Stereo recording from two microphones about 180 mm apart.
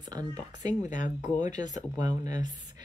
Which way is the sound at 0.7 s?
45° left (ahead or behind).